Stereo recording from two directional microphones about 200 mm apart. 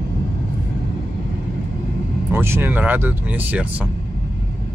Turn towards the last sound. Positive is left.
turn(degrees=-10)  # may be behind; listen again after turning